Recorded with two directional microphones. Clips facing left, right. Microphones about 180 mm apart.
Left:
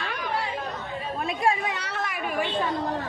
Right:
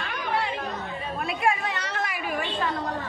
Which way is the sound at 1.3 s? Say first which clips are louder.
Left 1 dB; 35° left (ahead or behind).